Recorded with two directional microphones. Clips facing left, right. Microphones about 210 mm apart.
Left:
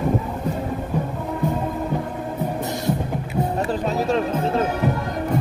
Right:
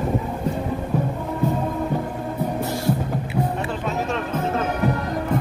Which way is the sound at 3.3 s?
35° left (ahead or behind).